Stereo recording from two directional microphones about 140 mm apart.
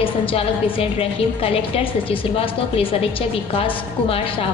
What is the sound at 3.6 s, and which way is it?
Speech, 40° left (ahead or behind).